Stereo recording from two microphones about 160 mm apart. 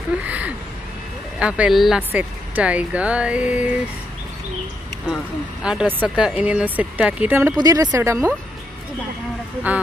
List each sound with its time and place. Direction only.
0.2 s a woman's voice: 10° right (ahead or behind)
5.0 s a woman's voice: 5° right (ahead or behind); by 8.3 s 20° right (ahead or behind)